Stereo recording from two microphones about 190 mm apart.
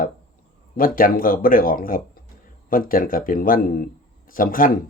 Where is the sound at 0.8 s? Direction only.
50° left (ahead or behind).